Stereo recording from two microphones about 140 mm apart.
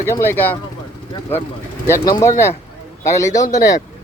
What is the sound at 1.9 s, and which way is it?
Speech, 20° left (ahead or behind).